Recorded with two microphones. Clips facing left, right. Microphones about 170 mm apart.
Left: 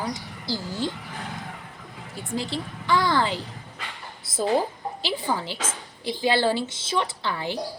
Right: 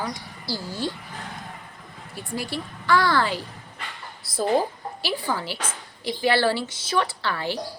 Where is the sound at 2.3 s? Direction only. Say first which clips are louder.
Left 1 dB; 20° left (ahead or behind).